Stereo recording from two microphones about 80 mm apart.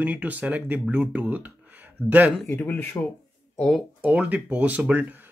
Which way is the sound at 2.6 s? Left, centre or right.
Left.